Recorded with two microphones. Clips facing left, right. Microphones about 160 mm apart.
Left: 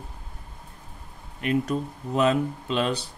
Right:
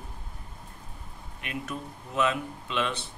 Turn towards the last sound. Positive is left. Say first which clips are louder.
# left 5 dB
turn(degrees=35)  # may be behind; listen again after turning